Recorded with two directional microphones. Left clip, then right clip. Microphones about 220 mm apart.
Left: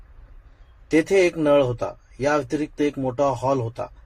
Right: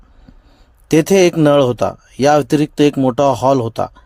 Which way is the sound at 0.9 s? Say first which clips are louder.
Right 7 dB; 40° right (ahead or behind).